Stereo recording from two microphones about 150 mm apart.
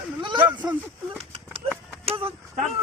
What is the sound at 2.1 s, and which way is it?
Speech, 35° right (ahead or behind).